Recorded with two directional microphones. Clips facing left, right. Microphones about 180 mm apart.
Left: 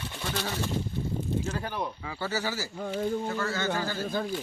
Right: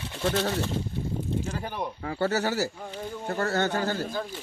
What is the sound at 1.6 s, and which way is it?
Speech, 15° right (ahead or behind).